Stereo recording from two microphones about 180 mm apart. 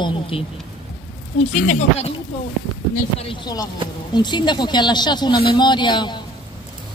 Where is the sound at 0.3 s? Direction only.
30° left (ahead or behind).